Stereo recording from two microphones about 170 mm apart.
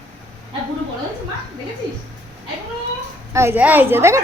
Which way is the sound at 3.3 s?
15° right (ahead or behind).